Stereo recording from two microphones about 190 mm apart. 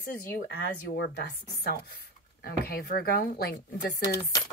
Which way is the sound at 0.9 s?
60° left (ahead or behind).